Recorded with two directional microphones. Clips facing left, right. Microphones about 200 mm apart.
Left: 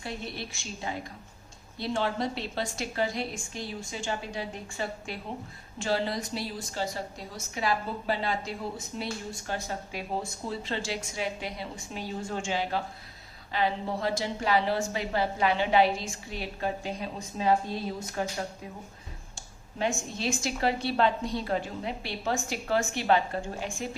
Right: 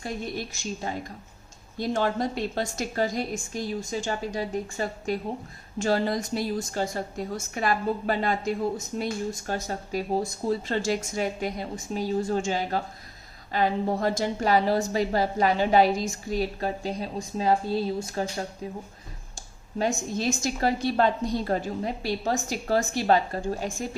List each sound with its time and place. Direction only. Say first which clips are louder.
0.0 s a woman's voice: right 5 dB; 45° right (ahead or behind)